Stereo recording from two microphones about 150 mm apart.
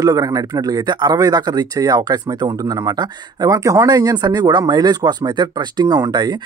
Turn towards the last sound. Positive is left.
turn(degrees=-30)  # may be behind; listen again after turning